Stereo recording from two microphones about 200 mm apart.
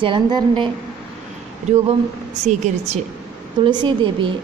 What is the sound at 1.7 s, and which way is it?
Speech, 35° right (ahead or behind).